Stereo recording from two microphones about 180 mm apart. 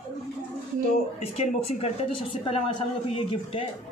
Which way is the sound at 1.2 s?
35° left (ahead or behind).